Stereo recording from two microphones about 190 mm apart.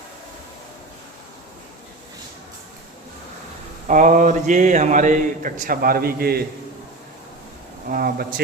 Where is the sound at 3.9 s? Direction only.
40° right (ahead or behind).